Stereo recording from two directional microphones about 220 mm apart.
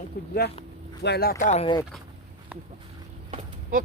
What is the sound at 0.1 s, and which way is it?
Speech, 40° left (ahead or behind).